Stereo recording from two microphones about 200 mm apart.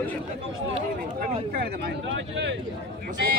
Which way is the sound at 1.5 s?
50° right (ahead or behind).